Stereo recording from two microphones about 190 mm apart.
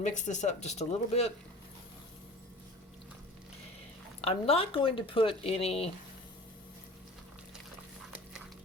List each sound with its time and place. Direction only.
0.0 s speech: 40° left (ahead or behind)
4.2 s speech: 30° left (ahead or behind)